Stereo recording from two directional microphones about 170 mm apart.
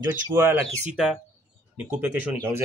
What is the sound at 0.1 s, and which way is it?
Speech, 10° right (ahead or behind).